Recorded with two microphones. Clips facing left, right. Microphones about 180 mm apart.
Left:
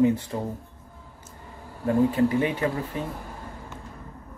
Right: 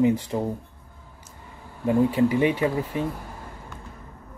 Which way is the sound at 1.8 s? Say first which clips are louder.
Right 1 dB; 15° right (ahead or behind).